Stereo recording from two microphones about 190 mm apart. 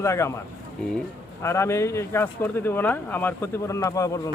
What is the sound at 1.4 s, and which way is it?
A man's voice, 15° left (ahead or behind).